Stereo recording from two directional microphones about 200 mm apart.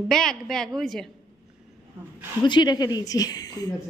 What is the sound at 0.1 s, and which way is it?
Speech, centre (ahead or behind).